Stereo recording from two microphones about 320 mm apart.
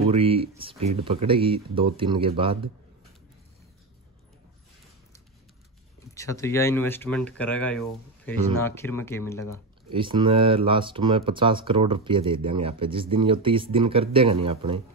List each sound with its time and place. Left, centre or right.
0.1 s speech: centre
6.1 s speech: centre
9.9 s speech: centre